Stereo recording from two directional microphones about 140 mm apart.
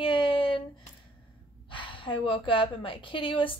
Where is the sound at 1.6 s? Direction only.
35° left (ahead or behind).